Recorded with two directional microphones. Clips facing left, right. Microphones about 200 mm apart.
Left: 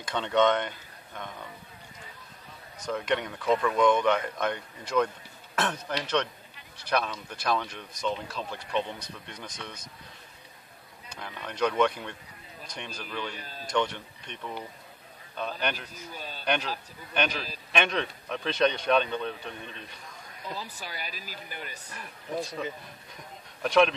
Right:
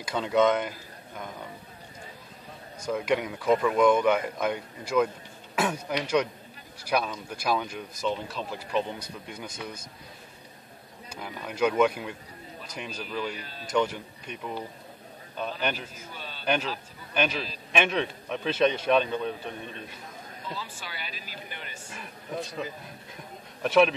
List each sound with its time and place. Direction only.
0.0 s speech: 5° right (ahead or behind)
2.8 s speech: 5° right (ahead or behind)
11.1 s speech: 5° right (ahead or behind)
13.4 s speech: 40° left (ahead or behind)
13.7 s speech: 5° right (ahead or behind)
15.6 s speech: 5° right (ahead or behind)
16.1 s a sound: 45° left (ahead or behind)
17.1 s speech: 5° right (ahead or behind)
20.4 s speech: 40° left (ahead or behind)
22.3 s speech: centre (ahead or behind)